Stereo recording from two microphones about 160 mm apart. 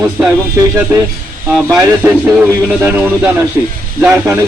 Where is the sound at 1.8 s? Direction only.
10° right (ahead or behind).